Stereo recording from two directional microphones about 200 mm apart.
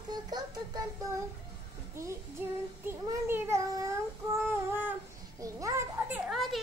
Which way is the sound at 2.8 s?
10° right (ahead or behind).